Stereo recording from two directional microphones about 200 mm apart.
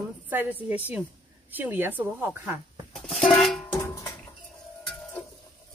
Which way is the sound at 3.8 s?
15° left (ahead or behind).